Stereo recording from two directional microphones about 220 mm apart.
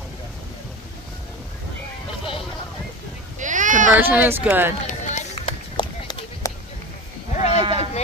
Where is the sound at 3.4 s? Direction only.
35° right (ahead or behind).